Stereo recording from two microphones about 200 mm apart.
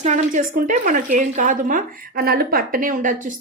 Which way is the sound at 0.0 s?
35° right (ahead or behind).